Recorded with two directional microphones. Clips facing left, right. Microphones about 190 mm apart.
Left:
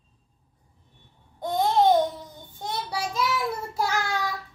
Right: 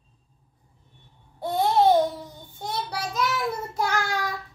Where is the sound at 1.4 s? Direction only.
10° right (ahead or behind).